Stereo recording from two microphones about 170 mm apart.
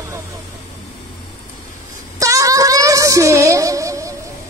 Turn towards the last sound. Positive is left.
turn(degrees=-20)  # may be behind; listen again after turning